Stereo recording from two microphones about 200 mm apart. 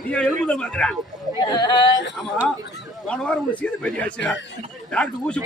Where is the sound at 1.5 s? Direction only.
20° left (ahead or behind).